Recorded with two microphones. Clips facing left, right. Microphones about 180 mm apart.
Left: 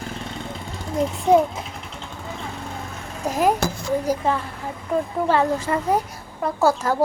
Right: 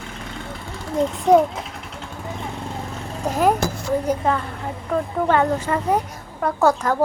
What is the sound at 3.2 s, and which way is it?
A child's voice, 10° left (ahead or behind).